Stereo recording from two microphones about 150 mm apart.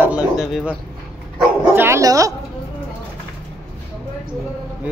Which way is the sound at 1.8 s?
20° right (ahead or behind).